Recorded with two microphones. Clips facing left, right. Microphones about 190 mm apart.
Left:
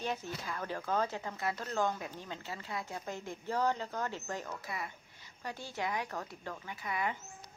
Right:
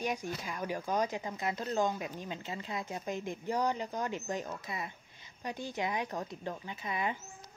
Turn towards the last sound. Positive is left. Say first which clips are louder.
# right 1 dB
turn(degrees=-20)  # may be behind; listen again after turning